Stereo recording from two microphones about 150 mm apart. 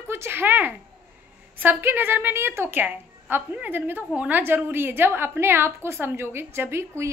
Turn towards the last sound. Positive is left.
turn(degrees=-15)  # may be behind; listen again after turning